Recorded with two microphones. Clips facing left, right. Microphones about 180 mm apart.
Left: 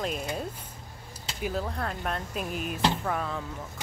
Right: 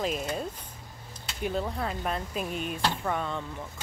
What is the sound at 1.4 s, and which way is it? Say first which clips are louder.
Speech: right 1 dB; centre (ahead or behind).